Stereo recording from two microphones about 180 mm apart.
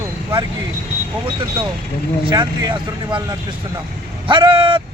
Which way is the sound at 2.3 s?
25° right (ahead or behind).